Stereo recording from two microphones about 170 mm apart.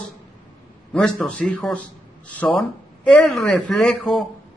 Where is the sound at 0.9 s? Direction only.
5° left (ahead or behind).